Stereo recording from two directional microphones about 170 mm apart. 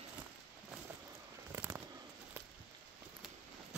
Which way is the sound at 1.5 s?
15° right (ahead or behind).